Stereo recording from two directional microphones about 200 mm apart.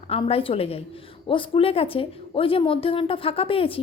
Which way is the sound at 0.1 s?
30° left (ahead or behind).